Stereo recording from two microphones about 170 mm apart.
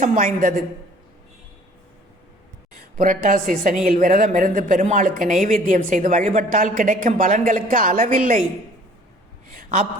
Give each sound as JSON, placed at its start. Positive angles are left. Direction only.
{"t": 0.0, "sound": "speech", "side_deg": -50}
{"t": 3.0, "sound": "speech", "side_deg": -55}
{"t": 9.5, "sound": "a sound", "side_deg": -50}